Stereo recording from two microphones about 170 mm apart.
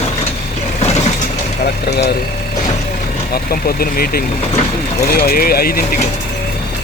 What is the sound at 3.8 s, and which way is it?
Speech, 60° left (ahead or behind).